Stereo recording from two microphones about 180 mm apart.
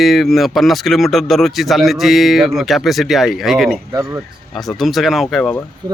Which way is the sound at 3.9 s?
20° right (ahead or behind).